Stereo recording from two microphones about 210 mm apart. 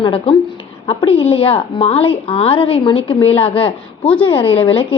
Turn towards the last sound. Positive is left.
turn(degrees=25)  # may be behind; listen again after turning